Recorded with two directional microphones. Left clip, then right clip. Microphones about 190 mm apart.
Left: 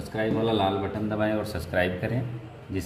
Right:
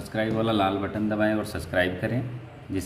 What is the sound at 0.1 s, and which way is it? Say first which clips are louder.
Speech: even; 30° right (ahead or behind).